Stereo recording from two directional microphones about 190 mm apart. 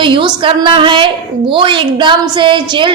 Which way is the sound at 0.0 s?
25° right (ahead or behind).